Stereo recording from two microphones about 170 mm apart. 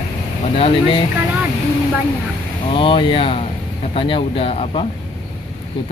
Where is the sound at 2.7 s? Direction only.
30° left (ahead or behind).